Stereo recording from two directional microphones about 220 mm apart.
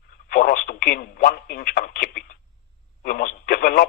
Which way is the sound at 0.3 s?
40° left (ahead or behind).